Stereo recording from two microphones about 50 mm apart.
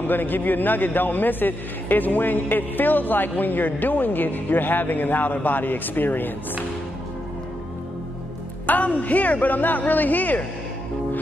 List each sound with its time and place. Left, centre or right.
0.0 s a man's voice: left
8.6 s a man's voice: left